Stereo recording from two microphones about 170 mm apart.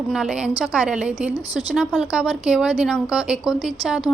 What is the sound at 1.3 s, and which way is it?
Speech, 25° left (ahead or behind).